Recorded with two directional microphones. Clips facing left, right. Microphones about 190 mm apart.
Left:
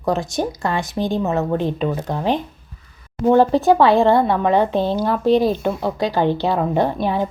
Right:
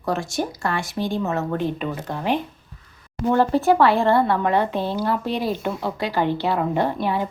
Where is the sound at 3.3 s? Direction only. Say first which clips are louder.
Left 4 dB; 20° left (ahead or behind).